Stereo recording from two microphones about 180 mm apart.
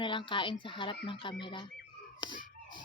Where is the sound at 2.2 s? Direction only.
25° left (ahead or behind).